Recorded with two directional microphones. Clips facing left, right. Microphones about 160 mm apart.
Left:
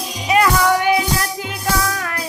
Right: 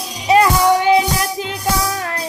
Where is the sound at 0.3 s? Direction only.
25° right (ahead or behind).